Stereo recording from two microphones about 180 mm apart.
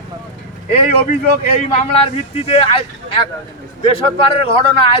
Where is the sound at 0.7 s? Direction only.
35° left (ahead or behind).